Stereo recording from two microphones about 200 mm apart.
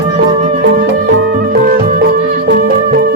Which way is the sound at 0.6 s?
60° right (ahead or behind).